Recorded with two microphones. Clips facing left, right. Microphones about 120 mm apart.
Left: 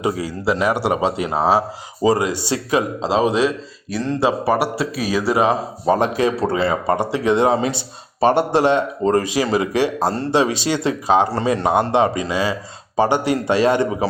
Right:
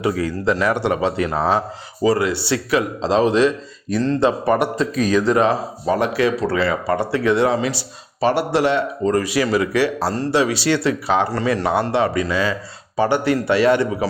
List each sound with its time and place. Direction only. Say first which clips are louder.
0.0 s a man's voice: right 1 dB; 15° left (ahead or behind)
5.8 s speech: left 1 dB; 30° left (ahead or behind)
8.2 s speech: left 3 dB; 50° left (ahead or behind)
8.5 s speech: left 2 dB; 20° left (ahead or behind)